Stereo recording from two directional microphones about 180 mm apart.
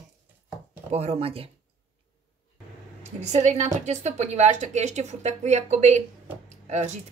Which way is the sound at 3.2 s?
40° right (ahead or behind).